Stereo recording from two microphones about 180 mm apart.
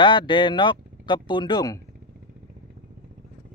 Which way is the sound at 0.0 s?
25° left (ahead or behind).